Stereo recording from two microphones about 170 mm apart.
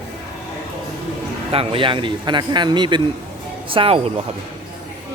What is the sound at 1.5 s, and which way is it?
Speech, 35° right (ahead or behind).